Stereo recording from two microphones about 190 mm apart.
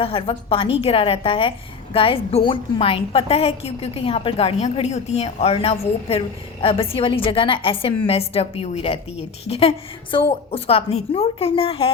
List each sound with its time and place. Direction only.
0.0 s a woman's voice: 30° left (ahead or behind)